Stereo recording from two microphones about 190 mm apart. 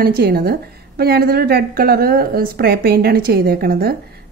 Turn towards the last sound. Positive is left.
turn(degrees=-55)  # may be behind; listen again after turning